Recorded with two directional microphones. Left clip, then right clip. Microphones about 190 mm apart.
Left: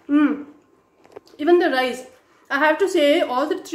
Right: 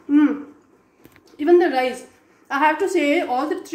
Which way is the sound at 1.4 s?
25° left (ahead or behind).